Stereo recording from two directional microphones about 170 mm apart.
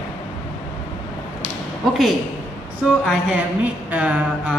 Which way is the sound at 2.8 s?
Centre (ahead or behind).